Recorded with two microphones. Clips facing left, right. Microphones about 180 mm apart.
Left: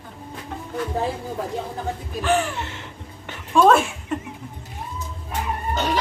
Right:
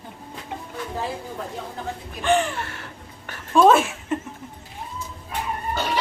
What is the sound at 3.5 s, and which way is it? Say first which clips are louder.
Chuckle: even; centre (ahead or behind).